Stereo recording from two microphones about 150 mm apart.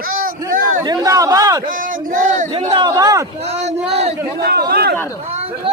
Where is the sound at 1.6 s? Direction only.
65° right (ahead or behind).